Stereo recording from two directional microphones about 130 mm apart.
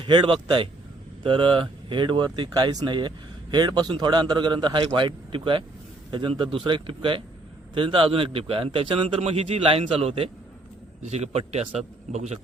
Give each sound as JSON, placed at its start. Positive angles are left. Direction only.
{"t": 0.0, "sound": "a man's voice", "side_deg": -40}